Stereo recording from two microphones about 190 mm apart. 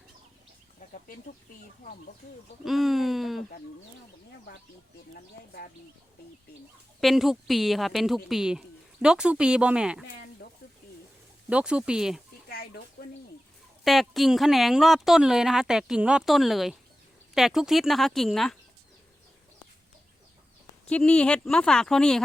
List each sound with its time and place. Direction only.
2.6 s a woman's voice: centre (ahead or behind)
7.0 s a woman's voice: centre (ahead or behind)
11.4 s a woman's voice: 5° right (ahead or behind)
12.5 s a sound: 55° left (ahead or behind)
13.8 s a woman's voice: centre (ahead or behind)
20.8 s a woman's voice: 5° left (ahead or behind)